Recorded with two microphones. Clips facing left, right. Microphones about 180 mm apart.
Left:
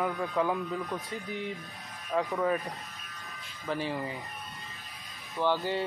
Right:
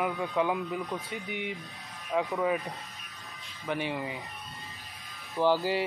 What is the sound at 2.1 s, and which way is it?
Speech, centre (ahead or behind).